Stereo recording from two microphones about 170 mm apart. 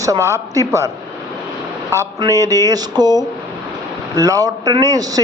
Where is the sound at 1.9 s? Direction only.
15° right (ahead or behind).